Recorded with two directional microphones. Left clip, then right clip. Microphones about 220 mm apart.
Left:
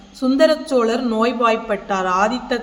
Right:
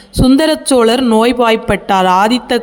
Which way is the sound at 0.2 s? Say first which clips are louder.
Right 4 dB; 50° right (ahead or behind).